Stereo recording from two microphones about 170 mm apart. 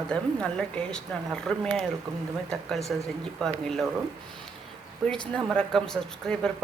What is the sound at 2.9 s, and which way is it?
Speech, centre (ahead or behind).